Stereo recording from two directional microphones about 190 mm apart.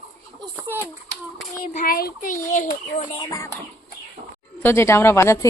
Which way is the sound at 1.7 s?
45° left (ahead or behind).